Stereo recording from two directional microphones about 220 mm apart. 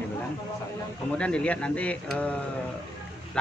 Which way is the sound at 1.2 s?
5° left (ahead or behind).